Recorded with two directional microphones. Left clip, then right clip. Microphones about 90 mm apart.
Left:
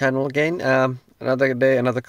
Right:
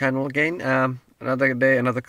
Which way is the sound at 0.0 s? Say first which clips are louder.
Left 2 dB; 40° left (ahead or behind).